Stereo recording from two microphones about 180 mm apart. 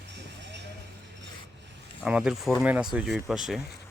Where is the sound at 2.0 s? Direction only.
5° right (ahead or behind).